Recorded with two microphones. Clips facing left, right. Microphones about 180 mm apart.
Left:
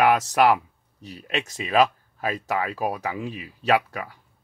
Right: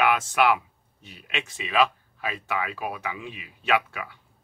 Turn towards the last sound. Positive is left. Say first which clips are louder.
# left 3 dB
turn(degrees=40)  # may be behind; listen again after turning